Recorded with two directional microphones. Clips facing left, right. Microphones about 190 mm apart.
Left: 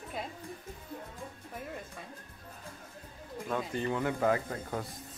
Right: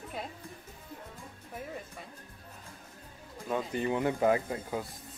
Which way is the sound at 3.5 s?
15° right (ahead or behind).